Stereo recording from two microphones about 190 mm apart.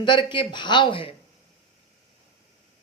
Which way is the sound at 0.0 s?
25° left (ahead or behind).